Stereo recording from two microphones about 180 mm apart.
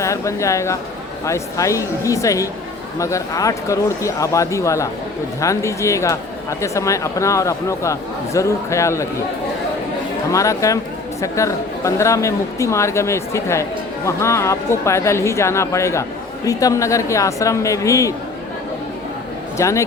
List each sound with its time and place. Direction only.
0.0 s speech: 15° left (ahead or behind)
10.3 s speech: 15° left (ahead or behind)
19.5 s a man's voice: 15° left (ahead or behind)